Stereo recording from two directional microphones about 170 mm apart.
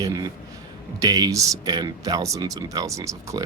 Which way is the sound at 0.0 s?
20° right (ahead or behind).